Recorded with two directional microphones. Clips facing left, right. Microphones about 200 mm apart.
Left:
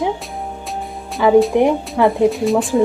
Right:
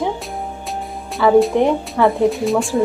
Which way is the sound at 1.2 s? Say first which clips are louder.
Left 1 dB; 15° left (ahead or behind).